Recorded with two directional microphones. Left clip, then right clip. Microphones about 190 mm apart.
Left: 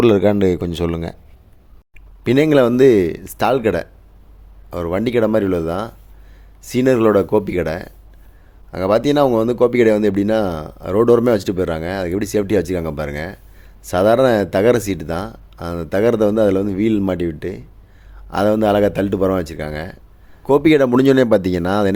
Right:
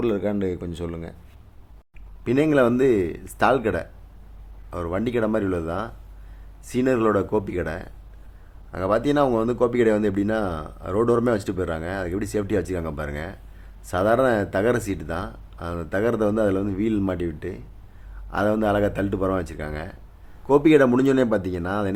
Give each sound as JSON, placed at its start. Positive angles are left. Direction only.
{"t": 0.0, "sound": "speech", "side_deg": 35}
{"t": 2.2, "sound": "speech", "side_deg": 35}
{"t": 20.5, "sound": "speech", "side_deg": 40}